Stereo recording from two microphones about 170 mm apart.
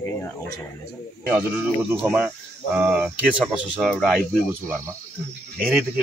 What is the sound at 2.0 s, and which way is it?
A man's voice, 10° right (ahead or behind).